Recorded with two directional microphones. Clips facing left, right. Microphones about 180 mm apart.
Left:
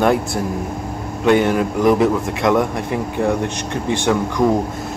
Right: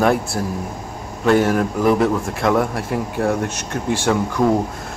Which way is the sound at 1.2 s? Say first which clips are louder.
Left 1 dB; 20° left (ahead or behind).